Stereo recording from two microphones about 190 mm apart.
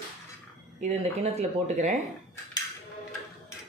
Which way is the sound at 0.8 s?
35° right (ahead or behind).